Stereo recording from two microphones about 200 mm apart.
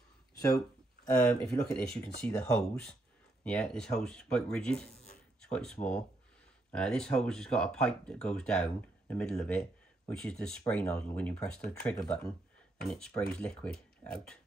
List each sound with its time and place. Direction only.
1.4 s speech: 5° left (ahead or behind)